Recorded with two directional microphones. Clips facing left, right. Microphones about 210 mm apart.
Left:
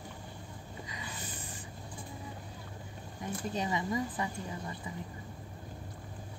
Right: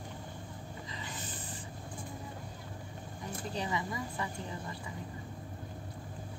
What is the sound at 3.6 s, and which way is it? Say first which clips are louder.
Speech: left 4 dB; 20° left (ahead or behind).